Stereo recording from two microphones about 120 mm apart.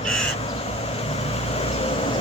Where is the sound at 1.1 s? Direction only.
55° left (ahead or behind).